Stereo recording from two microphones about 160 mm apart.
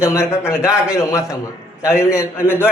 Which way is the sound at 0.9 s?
20° left (ahead or behind).